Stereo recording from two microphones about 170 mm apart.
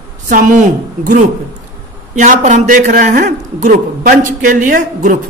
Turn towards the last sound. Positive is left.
turn(degrees=-55)  # may be behind; listen again after turning